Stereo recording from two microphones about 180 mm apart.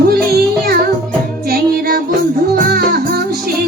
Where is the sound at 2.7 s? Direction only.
60° right (ahead or behind).